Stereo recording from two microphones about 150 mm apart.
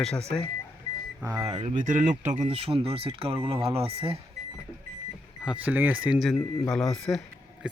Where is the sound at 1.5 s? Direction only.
40° right (ahead or behind).